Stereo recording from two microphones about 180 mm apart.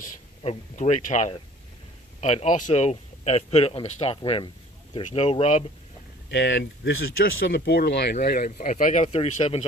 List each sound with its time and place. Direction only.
0.4 s speech: 45° left (ahead or behind)
6.3 s speech: 80° left
7.5 s speech: 60° left (ahead or behind)
8.2 s speech: 55° left (ahead or behind); by 9.6 s 35° left (ahead or behind)